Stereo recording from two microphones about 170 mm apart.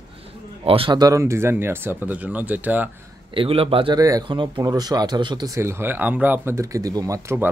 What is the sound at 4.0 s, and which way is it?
Speech, 20° right (ahead or behind).